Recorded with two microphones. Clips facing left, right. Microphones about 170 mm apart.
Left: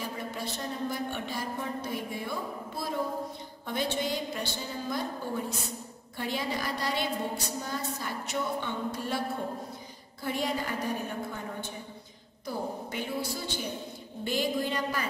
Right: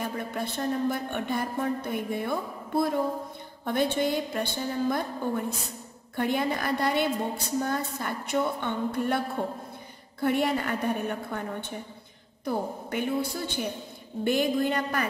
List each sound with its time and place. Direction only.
0.0 s a woman's voice: 55° right (ahead or behind)
10.2 s a woman's voice: 60° right (ahead or behind)
12.4 s a woman's voice: 55° right (ahead or behind)